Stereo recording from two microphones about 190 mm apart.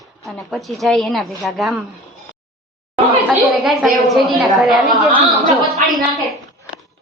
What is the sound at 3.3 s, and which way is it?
A woman's voice, centre (ahead or behind).